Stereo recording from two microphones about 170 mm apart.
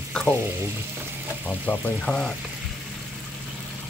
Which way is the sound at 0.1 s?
10° left (ahead or behind).